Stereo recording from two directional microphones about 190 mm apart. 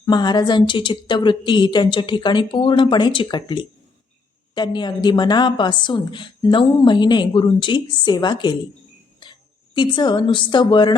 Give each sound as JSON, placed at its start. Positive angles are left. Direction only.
{"t": 0.0, "sound": "a woman's voice", "side_deg": 20}